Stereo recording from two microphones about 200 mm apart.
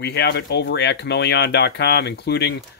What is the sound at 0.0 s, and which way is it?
Speech, 55° left (ahead or behind).